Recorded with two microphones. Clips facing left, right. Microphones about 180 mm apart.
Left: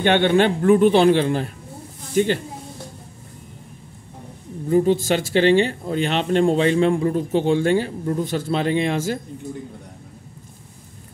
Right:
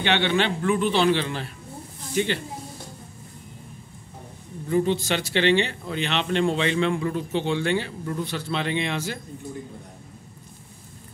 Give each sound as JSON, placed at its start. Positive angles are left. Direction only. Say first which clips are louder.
{"t": 0.0, "sound": "speech", "louder": "left 6 dB", "side_deg": 50}
{"t": 4.6, "sound": "speech", "louder": "left 5 dB", "side_deg": 40}